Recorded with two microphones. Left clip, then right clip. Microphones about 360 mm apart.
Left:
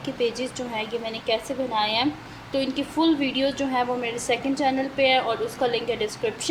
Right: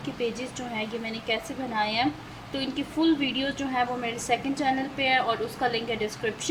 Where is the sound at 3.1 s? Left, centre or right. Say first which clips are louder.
Left 4 dB; centre.